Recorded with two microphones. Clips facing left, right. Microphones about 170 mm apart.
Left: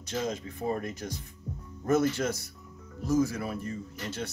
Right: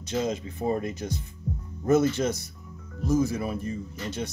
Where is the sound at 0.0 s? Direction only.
20° right (ahead or behind).